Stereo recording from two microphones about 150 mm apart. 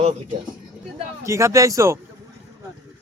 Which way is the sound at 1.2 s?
20° right (ahead or behind).